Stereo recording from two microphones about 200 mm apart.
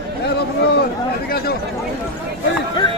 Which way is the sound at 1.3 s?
50° left (ahead or behind).